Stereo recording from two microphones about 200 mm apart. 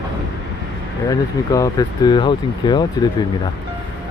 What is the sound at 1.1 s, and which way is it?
Speech, 15° left (ahead or behind).